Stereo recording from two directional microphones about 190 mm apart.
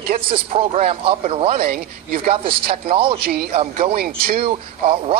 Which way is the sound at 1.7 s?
45° right (ahead or behind).